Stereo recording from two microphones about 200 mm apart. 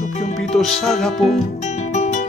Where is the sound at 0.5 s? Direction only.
Centre (ahead or behind).